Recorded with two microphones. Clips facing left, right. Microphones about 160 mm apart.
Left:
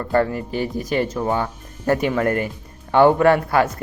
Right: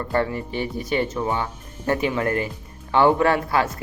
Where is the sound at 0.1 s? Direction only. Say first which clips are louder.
Left 5 dB; 45° left (ahead or behind).